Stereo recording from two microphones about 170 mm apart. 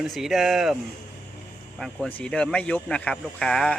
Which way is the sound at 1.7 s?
5° left (ahead or behind).